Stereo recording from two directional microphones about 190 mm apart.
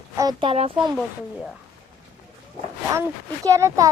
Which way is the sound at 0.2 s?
25° right (ahead or behind).